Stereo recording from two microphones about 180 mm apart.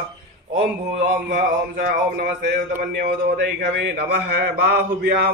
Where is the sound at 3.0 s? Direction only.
70° right (ahead or behind).